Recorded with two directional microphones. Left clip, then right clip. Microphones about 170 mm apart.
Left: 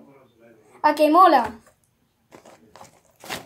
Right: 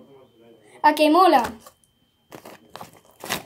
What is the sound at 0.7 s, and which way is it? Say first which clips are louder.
Speech: left 1 dB; 10° right (ahead or behind).